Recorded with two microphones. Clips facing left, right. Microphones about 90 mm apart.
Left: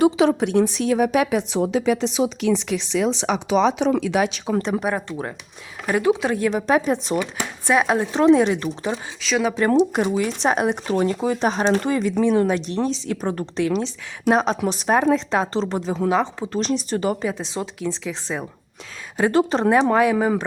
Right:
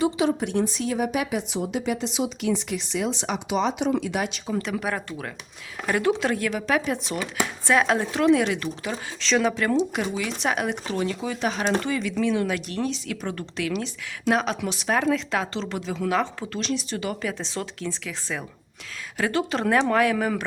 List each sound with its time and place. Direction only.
0.0 s a woman's voice: 85° left
4.6 s speech: 30° left (ahead or behind)
5.8 s speech: 15° left (ahead or behind)
6.5 s speech: 30° left (ahead or behind)
7.7 s speech: 15° left (ahead or behind)
8.1 s speech: 30° left (ahead or behind)
9.2 s speech: 5° left (ahead or behind)
9.9 s speech: 40° left (ahead or behind)
14.9 s speech: 30° left (ahead or behind)
16.1 s speech: 15° left (ahead or behind)
16.5 s speech: 40° left (ahead or behind)
17.3 s speech: 15° left (ahead or behind)
19.3 s speech: 35° left (ahead or behind)